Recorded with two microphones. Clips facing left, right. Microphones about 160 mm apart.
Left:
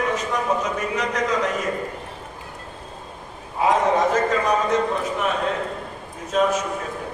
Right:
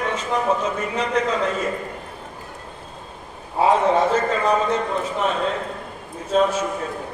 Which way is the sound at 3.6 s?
30° right (ahead or behind).